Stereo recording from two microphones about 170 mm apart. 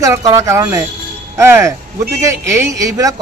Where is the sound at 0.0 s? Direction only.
20° right (ahead or behind).